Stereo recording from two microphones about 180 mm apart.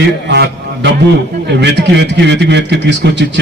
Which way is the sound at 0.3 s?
70° right (ahead or behind).